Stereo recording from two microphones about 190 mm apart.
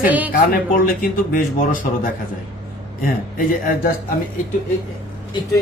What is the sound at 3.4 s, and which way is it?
Speech, 50° left (ahead or behind).